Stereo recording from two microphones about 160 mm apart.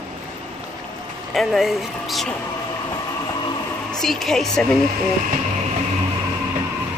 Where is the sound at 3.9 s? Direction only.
Centre (ahead or behind).